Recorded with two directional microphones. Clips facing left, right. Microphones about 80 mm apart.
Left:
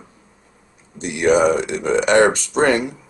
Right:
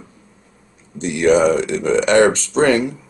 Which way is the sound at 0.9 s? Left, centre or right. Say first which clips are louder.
Right 2 dB; centre.